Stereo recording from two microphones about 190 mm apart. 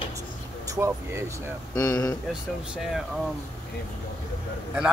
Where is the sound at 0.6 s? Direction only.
15° right (ahead or behind).